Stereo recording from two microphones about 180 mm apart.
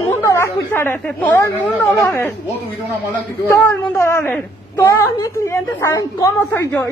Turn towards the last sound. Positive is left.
turn(degrees=10)  # may be behind; listen again after turning